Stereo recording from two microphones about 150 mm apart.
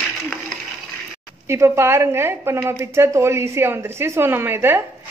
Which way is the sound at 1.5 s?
15° right (ahead or behind).